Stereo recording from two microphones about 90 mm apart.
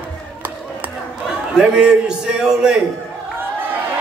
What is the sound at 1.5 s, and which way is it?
A man's voice, 10° right (ahead or behind).